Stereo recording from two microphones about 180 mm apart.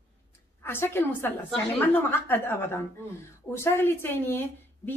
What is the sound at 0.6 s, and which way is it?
A woman's voice, 10° left (ahead or behind).